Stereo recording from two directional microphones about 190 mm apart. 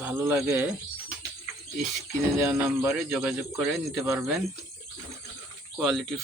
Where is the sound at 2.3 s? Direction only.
15° right (ahead or behind).